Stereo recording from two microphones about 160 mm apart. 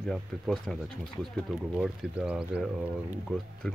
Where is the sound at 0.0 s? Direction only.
Centre (ahead or behind).